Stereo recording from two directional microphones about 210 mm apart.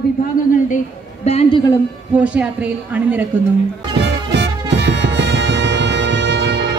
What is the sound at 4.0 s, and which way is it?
Music, 55° right (ahead or behind).